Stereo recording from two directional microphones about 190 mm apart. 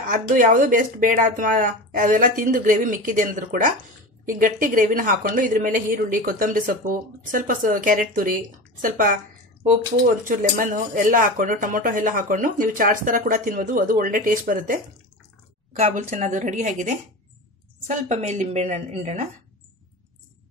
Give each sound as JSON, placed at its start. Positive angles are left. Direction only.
{"t": 0.0, "sound": "speech", "side_deg": -45}
{"t": 15.9, "sound": "a woman's voice", "side_deg": -45}